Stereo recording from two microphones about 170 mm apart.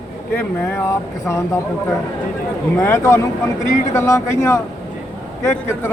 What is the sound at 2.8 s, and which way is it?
Speech, 15° left (ahead or behind).